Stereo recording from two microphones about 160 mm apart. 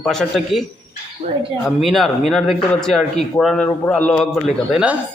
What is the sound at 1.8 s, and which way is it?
Speech, centre (ahead or behind).